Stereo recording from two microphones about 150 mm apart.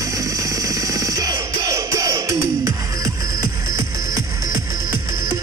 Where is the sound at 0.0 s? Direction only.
20° right (ahead or behind).